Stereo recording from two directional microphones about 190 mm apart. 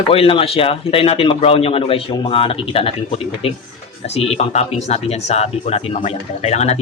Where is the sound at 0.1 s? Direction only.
30° left (ahead or behind).